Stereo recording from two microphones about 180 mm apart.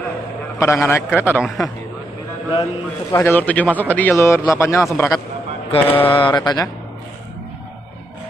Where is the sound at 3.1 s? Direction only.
10° left (ahead or behind).